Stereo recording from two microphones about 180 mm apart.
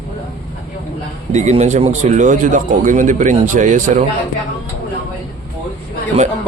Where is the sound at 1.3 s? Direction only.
40° right (ahead or behind).